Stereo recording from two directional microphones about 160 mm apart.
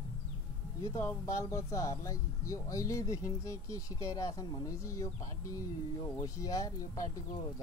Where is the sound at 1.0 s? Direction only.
15° left (ahead or behind).